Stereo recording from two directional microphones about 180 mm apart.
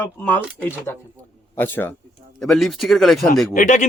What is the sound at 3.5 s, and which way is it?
Speech, 45° left (ahead or behind).